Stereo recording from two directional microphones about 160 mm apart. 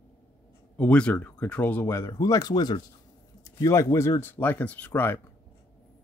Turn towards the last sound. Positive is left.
turn(degrees=10)  # may be behind; listen again after turning